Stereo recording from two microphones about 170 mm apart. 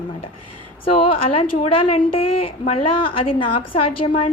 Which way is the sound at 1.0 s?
30° left (ahead or behind).